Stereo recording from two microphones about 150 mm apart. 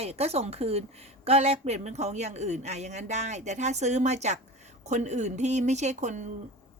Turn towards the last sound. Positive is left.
turn(degrees=-55)  # may be behind; listen again after turning